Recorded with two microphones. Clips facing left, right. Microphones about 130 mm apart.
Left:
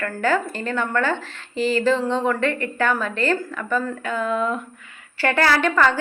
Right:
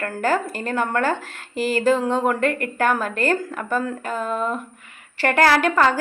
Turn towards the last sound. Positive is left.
turn(degrees=-40)  # may be behind; listen again after turning